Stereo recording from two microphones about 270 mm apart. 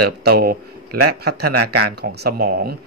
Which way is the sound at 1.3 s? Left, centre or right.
Right.